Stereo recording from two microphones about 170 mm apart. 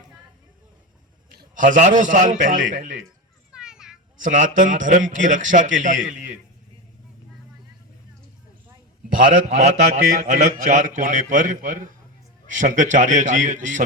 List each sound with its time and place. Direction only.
1.5 s a man's voice: 50° right (ahead or behind)
3.5 s children playing: 5° right (ahead or behind)
4.2 s a man's voice: 50° right (ahead or behind)
9.1 s a man's voice: 50° right (ahead or behind)